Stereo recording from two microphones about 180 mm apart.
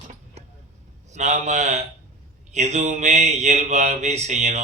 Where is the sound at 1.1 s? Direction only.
40° right (ahead or behind).